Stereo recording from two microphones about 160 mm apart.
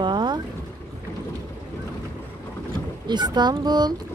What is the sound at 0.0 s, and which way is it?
Boat, 30° right (ahead or behind).